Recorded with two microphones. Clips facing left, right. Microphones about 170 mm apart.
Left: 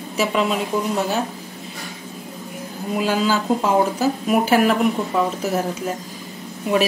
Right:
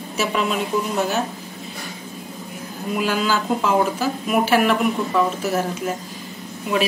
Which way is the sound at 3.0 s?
35° left (ahead or behind).